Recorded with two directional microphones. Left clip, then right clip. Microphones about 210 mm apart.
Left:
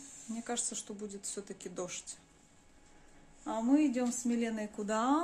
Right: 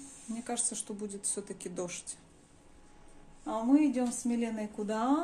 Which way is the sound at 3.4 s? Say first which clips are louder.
Right 2 dB; 25° left (ahead or behind).